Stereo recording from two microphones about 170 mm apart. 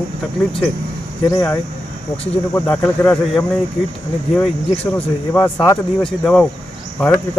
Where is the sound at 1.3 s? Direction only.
15° left (ahead or behind).